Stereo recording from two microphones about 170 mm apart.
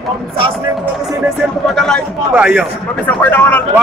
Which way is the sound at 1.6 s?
Centre (ahead or behind).